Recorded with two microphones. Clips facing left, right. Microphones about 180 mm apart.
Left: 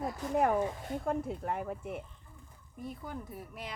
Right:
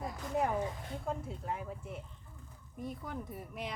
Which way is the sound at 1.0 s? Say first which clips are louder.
Left 5 dB; 60° left (ahead or behind).